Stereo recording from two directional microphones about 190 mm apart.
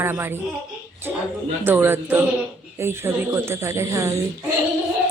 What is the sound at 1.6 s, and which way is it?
A woman's voice, 10° right (ahead or behind).